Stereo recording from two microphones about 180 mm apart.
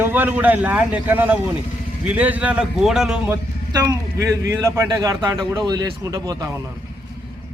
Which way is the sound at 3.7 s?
20° right (ahead or behind).